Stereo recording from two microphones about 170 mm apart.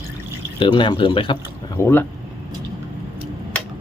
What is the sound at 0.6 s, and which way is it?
Speech, 30° left (ahead or behind).